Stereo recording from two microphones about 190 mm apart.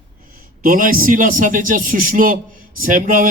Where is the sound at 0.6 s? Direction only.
45° right (ahead or behind).